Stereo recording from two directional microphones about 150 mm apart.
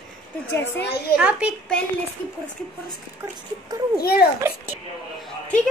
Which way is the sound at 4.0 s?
90° left.